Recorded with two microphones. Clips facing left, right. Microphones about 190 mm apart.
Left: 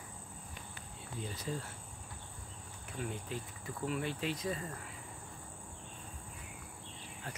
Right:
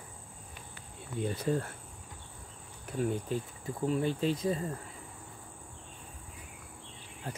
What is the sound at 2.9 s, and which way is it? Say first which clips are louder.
Cricket: right 9 dB; 40° right (ahead or behind).